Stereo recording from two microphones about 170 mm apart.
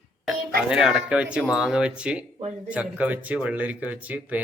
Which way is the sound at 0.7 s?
5° right (ahead or behind).